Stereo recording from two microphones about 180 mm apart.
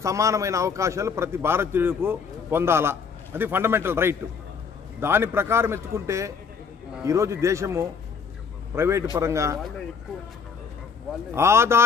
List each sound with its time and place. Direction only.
0.0 s a man's voice: 15° right (ahead or behind)
11.3 s a man's voice: 15° right (ahead or behind)